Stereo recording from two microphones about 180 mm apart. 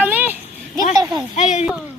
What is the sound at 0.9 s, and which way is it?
Speech, 20° right (ahead or behind).